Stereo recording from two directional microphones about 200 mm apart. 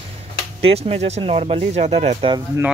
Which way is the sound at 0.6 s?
30° right (ahead or behind).